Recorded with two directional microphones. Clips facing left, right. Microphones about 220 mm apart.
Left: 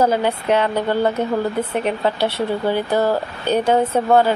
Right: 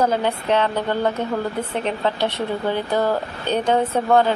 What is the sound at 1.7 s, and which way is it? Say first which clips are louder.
Speech: left 3 dB; 10° left (ahead or behind).